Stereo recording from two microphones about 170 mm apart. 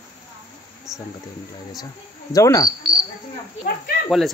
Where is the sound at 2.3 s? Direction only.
20° left (ahead or behind).